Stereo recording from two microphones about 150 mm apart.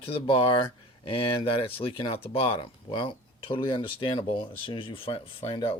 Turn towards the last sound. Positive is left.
turn(degrees=40)  # may be behind; listen again after turning